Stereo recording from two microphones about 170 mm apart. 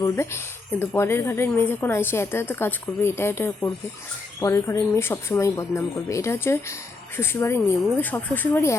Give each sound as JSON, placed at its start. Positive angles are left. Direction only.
{"t": 0.8, "sound": "a woman's voice", "side_deg": 15}